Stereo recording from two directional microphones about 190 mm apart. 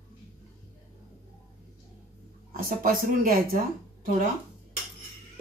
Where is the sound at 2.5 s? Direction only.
50° right (ahead or behind).